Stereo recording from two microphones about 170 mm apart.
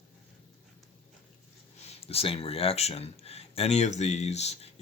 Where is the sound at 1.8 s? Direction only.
40° left (ahead or behind).